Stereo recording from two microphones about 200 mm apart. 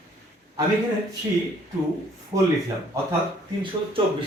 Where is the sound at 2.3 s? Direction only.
20° right (ahead or behind).